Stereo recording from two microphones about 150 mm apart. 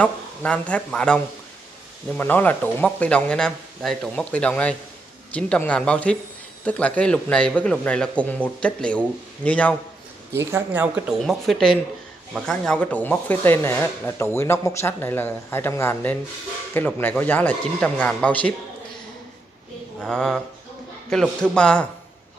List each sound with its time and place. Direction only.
0.0 s speech: 10° left (ahead or behind)
10.3 s speech: 15° right (ahead or behind)
11.1 s speech: centre (ahead or behind)
20.0 s speech: 5° left (ahead or behind)